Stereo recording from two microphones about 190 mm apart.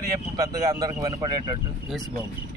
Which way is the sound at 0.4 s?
20° right (ahead or behind).